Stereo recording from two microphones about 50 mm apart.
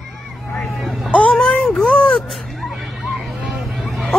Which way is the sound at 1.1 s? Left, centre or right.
Left.